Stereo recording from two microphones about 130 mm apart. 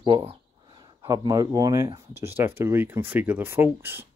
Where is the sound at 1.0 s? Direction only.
25° right (ahead or behind).